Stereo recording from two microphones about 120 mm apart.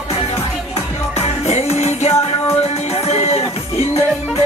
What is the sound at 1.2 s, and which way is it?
Music, 70° left (ahead or behind).